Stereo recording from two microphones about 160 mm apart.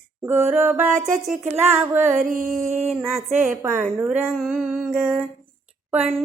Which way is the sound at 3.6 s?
15° right (ahead or behind).